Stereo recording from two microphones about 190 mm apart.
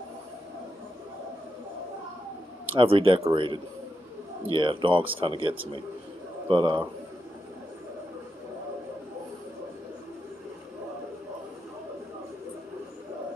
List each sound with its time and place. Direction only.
2.7 s speech: 30° right (ahead or behind)